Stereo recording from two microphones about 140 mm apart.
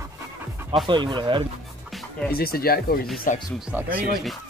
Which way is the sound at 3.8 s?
85° right.